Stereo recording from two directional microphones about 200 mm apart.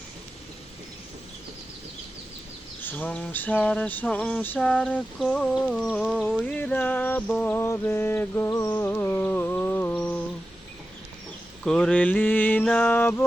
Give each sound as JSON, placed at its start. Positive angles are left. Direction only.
{"t": 2.8, "sound": "mantra", "side_deg": 10}
{"t": 11.6, "sound": "mantra", "side_deg": 5}